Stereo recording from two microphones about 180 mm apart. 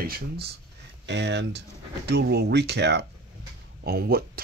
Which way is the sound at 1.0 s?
70° right (ahead or behind).